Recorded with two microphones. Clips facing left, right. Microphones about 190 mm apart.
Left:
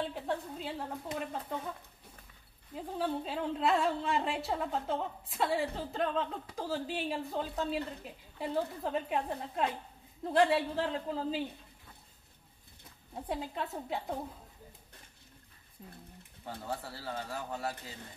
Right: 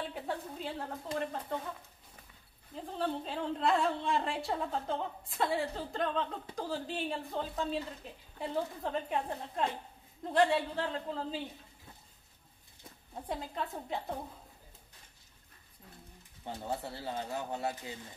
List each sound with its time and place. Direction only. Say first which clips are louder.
0.1 s a sound: left 2 dB; centre (ahead or behind)
2.7 s a woman's voice: left 1 dB; 5° left (ahead or behind)
13.1 s a woman's voice: left 2 dB; 5° left (ahead or behind)
16.4 s speech: right 2 dB; 20° right (ahead or behind)